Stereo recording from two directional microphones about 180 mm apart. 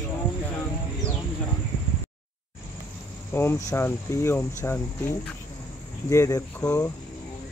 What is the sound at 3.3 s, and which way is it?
Speech, 15° left (ahead or behind).